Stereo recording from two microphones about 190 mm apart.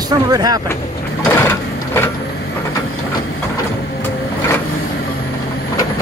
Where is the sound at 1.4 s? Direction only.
10° left (ahead or behind).